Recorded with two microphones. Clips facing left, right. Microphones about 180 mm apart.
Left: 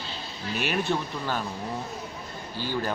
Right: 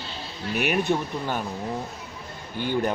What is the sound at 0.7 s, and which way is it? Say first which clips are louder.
Speech: right 3 dB; 15° right (ahead or behind).